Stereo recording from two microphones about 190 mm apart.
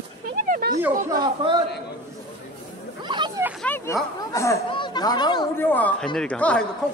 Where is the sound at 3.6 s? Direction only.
10° left (ahead or behind).